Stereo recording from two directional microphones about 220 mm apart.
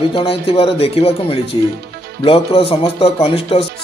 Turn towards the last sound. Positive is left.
turn(degrees=25)  # may be behind; listen again after turning